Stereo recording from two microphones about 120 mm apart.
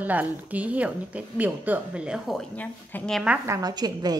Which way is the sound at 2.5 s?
15° left (ahead or behind).